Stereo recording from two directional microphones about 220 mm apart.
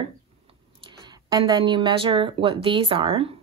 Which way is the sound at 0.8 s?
20° right (ahead or behind).